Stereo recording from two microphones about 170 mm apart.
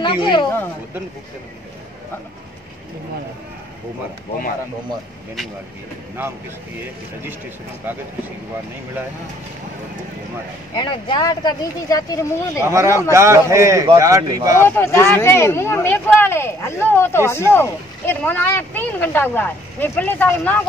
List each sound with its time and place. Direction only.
0.0 s speech: 30° left (ahead or behind)
10.7 s speech: 25° left (ahead or behind)
12.6 s a man's voice: 15° right (ahead or behind)
14.6 s speech: 15° left (ahead or behind)